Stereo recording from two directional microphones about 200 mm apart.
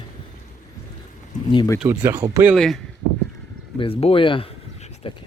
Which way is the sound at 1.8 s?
10° right (ahead or behind).